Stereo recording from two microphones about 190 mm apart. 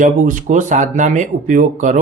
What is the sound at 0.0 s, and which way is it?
Speech, 40° right (ahead or behind).